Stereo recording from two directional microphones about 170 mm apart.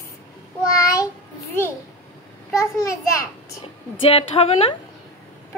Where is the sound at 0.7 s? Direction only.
20° left (ahead or behind).